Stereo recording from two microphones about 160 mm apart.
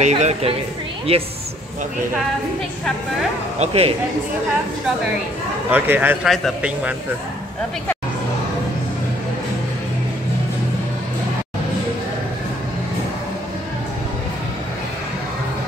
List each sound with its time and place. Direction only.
0.0 s a woman's voice: 45° right (ahead or behind)
3.5 s speech: 40° right (ahead or behind)
5.7 s speech: 10° right (ahead or behind)
6.2 s a man's voice: centre (ahead or behind)